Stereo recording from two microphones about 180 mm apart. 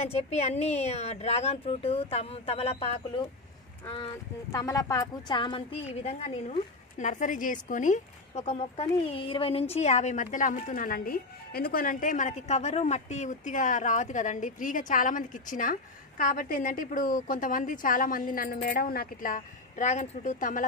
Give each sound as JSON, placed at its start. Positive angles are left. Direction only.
{"t": 0.0, "sound": "speech", "side_deg": 40}
{"t": 4.5, "sound": "a woman's voice", "side_deg": 20}